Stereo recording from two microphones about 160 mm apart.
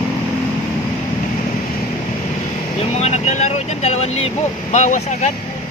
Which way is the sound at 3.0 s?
45° left (ahead or behind).